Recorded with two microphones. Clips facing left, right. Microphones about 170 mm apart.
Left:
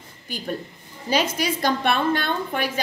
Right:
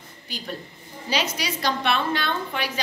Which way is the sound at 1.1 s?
50° left (ahead or behind).